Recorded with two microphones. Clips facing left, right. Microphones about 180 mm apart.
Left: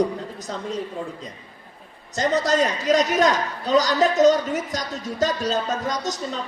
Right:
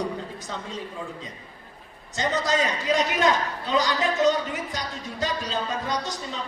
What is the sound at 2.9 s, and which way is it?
A woman's voice, 40° left (ahead or behind).